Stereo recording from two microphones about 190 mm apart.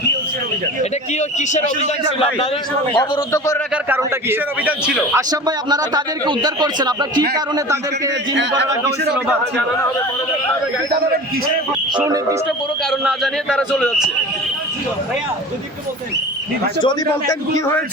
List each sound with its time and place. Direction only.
3.3 s a man's voice: 15° left (ahead or behind)
3.8 s a man's voice: 10° right (ahead or behind)
8.3 s a man's voice: 70° right (ahead or behind)
9.1 s a man's voice: 10° right (ahead or behind)
12.0 s a man's voice: 15° right (ahead or behind)
12.9 s a man's voice: centre (ahead or behind)